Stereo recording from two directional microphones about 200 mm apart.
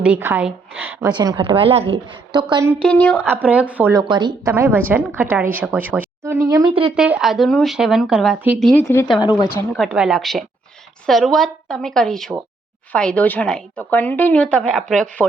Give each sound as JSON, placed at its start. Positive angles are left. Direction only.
{"t": 0.0, "sound": "a woman's voice", "side_deg": -10}
{"t": 2.8, "sound": "speech", "side_deg": 5}
{"t": 3.2, "sound": "a woman's voice", "side_deg": -10}
{"t": 4.1, "sound": "a woman's voice", "side_deg": -20}
{"t": 4.5, "sound": "a woman's voice", "side_deg": -10}
{"t": 6.9, "sound": "speech", "side_deg": -5}
{"t": 8.6, "sound": "speech", "side_deg": 10}
{"t": 9.7, "sound": "speech", "side_deg": 0}